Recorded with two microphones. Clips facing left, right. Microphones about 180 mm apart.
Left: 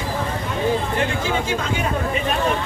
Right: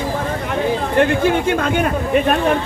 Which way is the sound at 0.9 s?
60° right (ahead or behind).